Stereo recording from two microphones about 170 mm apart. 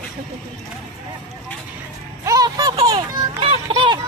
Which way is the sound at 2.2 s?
20° right (ahead or behind).